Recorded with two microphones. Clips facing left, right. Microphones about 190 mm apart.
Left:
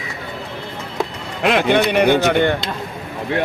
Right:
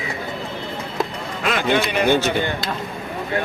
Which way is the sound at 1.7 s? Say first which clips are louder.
Left 3 dB; 65° left (ahead or behind).